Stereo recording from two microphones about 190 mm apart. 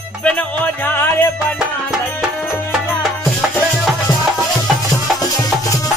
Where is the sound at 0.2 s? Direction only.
10° left (ahead or behind).